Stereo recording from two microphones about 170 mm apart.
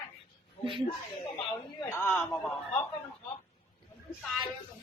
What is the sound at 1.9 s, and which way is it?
Speech, 15° left (ahead or behind).